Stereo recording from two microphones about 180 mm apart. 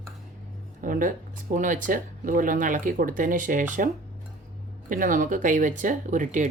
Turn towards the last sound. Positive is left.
turn(degrees=-45)  # may be behind; listen again after turning